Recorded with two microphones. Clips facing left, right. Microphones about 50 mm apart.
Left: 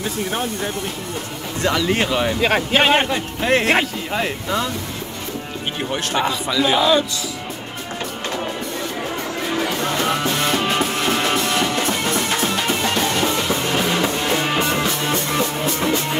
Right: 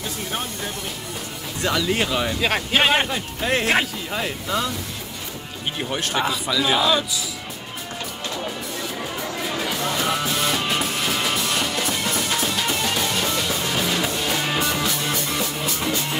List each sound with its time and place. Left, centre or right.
1.6 s a man's voice: centre
1.9 s speech: centre
5.9 s a man's voice: centre
9.6 s music: centre
10.6 s music: centre